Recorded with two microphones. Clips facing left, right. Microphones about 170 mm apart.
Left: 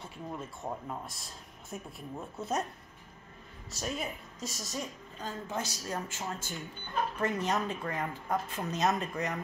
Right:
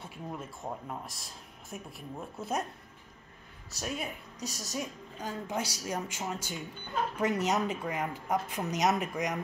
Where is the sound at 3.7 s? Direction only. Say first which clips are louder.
Even; centre (ahead or behind).